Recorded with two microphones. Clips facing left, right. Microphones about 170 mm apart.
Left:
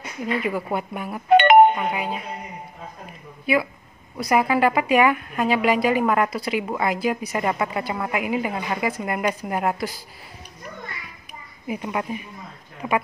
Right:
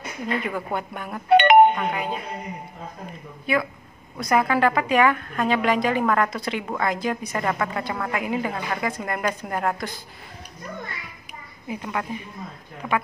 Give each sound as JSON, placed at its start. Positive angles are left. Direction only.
{"t": 0.4, "sound": "a woman's voice", "side_deg": 5}
{"t": 1.4, "sound": "music", "side_deg": 45}
{"t": 1.8, "sound": "a woman's voice", "side_deg": 5}
{"t": 3.5, "sound": "a woman's voice", "side_deg": 5}
{"t": 11.7, "sound": "a woman's voice", "side_deg": 15}